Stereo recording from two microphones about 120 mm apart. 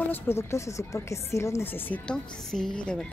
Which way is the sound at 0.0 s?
20° left (ahead or behind).